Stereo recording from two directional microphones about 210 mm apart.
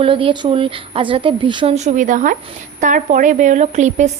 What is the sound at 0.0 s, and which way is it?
A woman's voice, 25° right (ahead or behind).